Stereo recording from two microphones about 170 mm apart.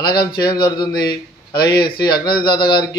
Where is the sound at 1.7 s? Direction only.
60° left (ahead or behind).